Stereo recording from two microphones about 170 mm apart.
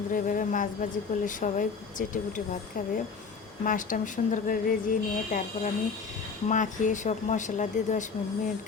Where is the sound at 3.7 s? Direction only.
50° left (ahead or behind).